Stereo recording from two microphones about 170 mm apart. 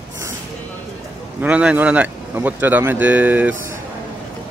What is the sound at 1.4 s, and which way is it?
Speech, 5° right (ahead or behind).